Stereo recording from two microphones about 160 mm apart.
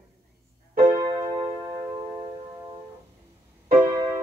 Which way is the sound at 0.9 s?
25° right (ahead or behind).